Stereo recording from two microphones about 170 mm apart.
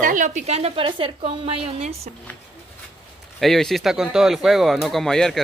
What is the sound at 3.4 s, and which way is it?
Speech, centre (ahead or behind).